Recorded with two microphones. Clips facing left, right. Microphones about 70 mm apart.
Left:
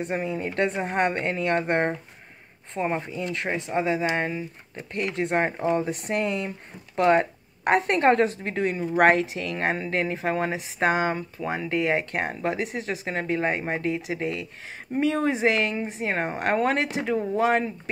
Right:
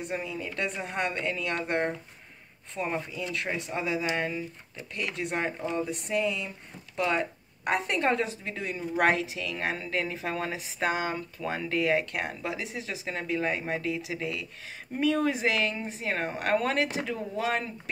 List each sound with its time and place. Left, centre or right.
0.0 s speech: left
2.7 s speech: left
5.7 s speech: left